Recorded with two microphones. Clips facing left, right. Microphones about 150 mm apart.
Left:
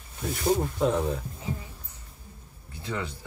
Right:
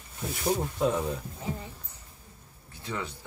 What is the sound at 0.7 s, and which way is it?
Speech, 5° right (ahead or behind).